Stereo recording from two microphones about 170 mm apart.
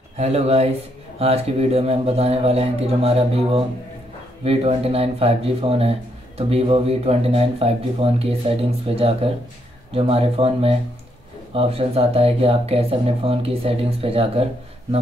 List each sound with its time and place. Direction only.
0.2 s speech: 40° right (ahead or behind)